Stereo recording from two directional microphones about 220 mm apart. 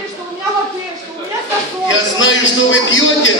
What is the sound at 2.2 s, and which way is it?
Speech, 60° left (ahead or behind).